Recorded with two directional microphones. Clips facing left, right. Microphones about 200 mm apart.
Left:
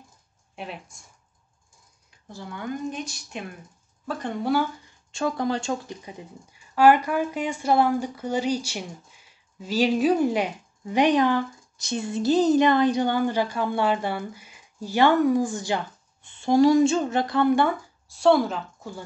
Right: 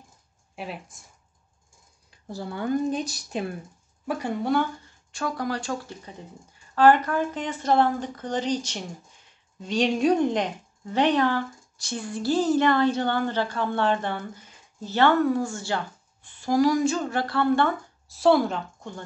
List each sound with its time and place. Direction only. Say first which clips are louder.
0.6 s speech: right 1 dB; centre (ahead or behind)
2.2 s speech: right 4 dB; 35° right (ahead or behind)
4.0 s speech: right 1 dB; 10° right (ahead or behind)
4.8 s speech: left 4 dB; 25° left (ahead or behind)
18.0 s speech: left 1 dB; centre (ahead or behind)